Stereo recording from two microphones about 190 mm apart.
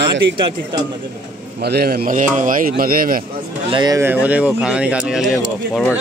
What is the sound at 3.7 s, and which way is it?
Speech, 20° right (ahead or behind).